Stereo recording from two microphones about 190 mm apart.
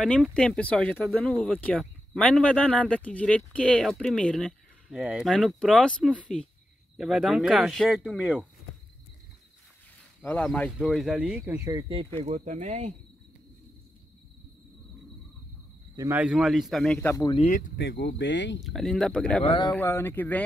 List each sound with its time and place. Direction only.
0.0 s speech: 5° left (ahead or behind)
10.2 s speech: 5° left (ahead or behind); by 11.8 s 15° right (ahead or behind)
12.2 s speech: 35° right (ahead or behind)
16.0 s speech: 10° right (ahead or behind); by 17.4 s 15° left (ahead or behind)
17.4 s speech: 40° left (ahead or behind)
17.7 s speech: 65° left (ahead or behind)
18.6 s speech: centre (ahead or behind)
19.4 s speech: 30° left (ahead or behind)
19.7 s speech: 10° left (ahead or behind)